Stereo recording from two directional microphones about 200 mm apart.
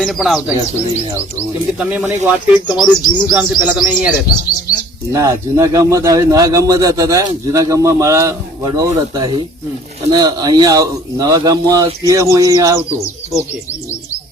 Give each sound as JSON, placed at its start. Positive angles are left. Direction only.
{"t": 0.0, "sound": "speech", "side_deg": 0}
{"t": 1.8, "sound": "a man's voice", "side_deg": -5}
{"t": 5.1, "sound": "a man's voice", "side_deg": -15}